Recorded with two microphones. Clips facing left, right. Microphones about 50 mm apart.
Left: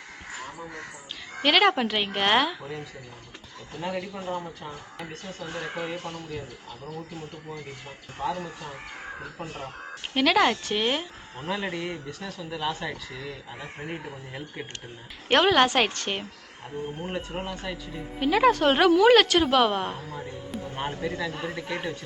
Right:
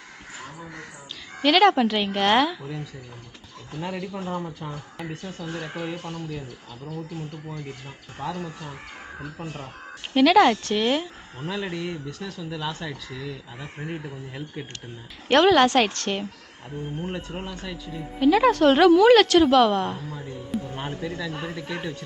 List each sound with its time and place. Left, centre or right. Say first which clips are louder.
1.4 s speech: right 4 dB; centre
4.3 s speech: right 2 dB; centre
4.7 s speech: right 3 dB; centre
8.2 s speech: left 1 dB; centre
15.3 s speech: right 3 dB; centre